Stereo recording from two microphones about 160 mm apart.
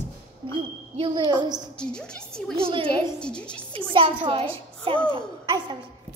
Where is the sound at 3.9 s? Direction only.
35° right (ahead or behind).